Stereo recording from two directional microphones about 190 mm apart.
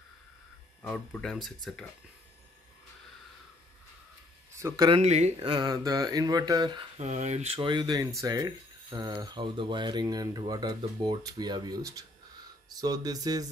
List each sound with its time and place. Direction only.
0.8 s speech: 5° left (ahead or behind)
4.6 s speech: 20° right (ahead or behind)
7.0 s speech: 40° right (ahead or behind); by 13.5 s 20° right (ahead or behind)